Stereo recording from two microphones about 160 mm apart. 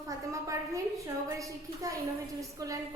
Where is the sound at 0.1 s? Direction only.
20° right (ahead or behind).